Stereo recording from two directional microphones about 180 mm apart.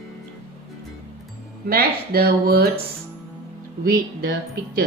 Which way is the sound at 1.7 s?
55° right (ahead or behind).